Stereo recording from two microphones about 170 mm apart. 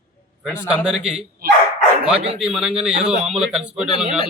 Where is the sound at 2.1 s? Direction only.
35° right (ahead or behind).